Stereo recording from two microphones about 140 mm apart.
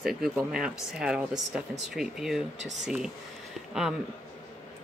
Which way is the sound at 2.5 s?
55° right (ahead or behind).